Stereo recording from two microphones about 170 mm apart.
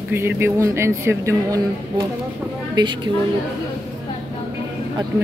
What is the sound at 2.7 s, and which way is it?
Speech, 25° right (ahead or behind).